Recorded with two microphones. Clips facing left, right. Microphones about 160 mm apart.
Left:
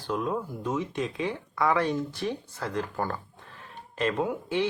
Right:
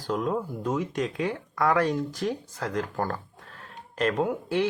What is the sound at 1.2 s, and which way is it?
Speech, 60° right (ahead or behind).